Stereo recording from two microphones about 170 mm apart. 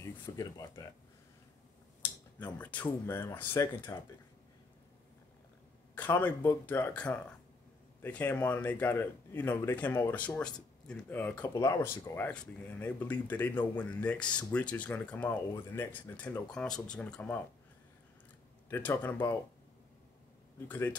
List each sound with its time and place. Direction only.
0.4 s speech: 20° left (ahead or behind)
2.0 s speech: 10° left (ahead or behind)
5.9 s speech: 10° left (ahead or behind)
18.7 s speech: 10° left (ahead or behind)
20.6 s speech: 10° left (ahead or behind)